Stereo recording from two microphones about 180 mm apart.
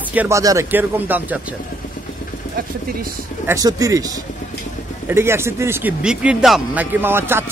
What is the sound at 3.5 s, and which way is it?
Speech, 20° right (ahead or behind).